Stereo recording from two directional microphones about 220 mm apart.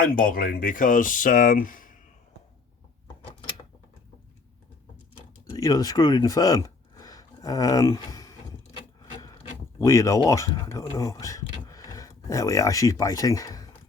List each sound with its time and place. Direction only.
0.0 s speech: 40° left (ahead or behind)
5.5 s speech: 15° left (ahead or behind)
9.8 s speech: 15° left (ahead or behind)